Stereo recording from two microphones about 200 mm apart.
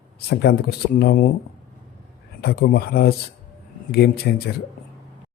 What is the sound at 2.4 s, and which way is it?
Speech, 50° left (ahead or behind).